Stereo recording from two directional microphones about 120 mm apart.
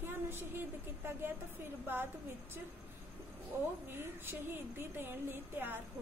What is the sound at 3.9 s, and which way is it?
A woman's voice, 20° right (ahead or behind).